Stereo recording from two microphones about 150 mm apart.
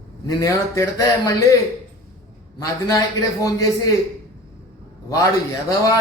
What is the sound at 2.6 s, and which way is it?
A man's voice, 25° left (ahead or behind).